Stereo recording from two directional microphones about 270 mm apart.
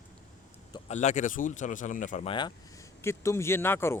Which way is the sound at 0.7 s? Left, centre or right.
Left.